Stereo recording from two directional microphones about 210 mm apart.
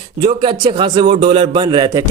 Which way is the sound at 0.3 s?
25° right (ahead or behind).